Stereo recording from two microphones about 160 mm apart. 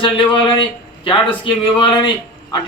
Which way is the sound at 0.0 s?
30° left (ahead or behind).